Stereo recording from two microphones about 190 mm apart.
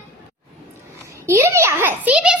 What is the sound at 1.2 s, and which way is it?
A child's voice, 15° right (ahead or behind).